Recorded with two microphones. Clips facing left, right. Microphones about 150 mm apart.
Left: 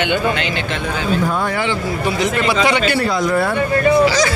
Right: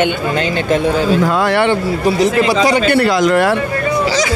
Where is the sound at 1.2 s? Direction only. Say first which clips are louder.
Right 6 dB; 90° right; by 1.8 s 70° right (ahead or behind).